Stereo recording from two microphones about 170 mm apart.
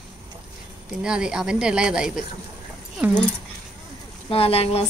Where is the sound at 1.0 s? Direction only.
5° right (ahead or behind).